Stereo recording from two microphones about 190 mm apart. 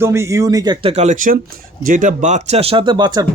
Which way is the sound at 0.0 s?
15° right (ahead or behind).